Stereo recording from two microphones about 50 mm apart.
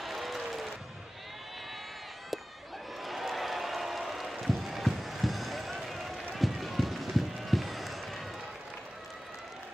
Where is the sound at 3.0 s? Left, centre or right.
Centre.